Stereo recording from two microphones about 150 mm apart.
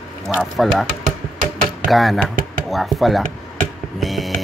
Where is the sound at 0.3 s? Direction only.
Centre (ahead or behind).